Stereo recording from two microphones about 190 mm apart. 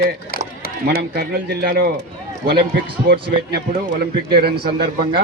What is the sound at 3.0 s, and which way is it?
A man's voice, 55° right (ahead or behind).